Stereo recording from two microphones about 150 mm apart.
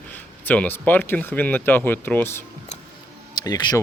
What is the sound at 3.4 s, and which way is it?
Speech, 25° left (ahead or behind).